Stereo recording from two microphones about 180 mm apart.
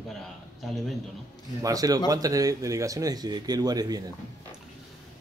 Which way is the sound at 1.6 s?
20° right (ahead or behind).